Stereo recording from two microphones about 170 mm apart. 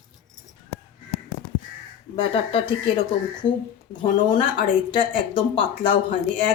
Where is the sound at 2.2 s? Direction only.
30° left (ahead or behind).